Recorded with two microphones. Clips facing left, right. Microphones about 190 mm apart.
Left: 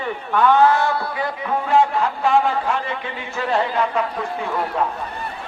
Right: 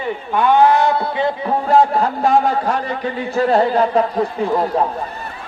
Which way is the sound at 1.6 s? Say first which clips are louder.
Right 4 dB; 40° right (ahead or behind).